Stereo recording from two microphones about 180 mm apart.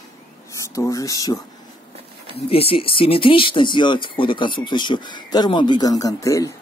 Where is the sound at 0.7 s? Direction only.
20° left (ahead or behind).